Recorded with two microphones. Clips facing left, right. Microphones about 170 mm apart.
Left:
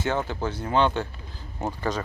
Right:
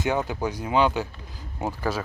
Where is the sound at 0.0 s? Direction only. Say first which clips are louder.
Right 1 dB; 15° right (ahead or behind).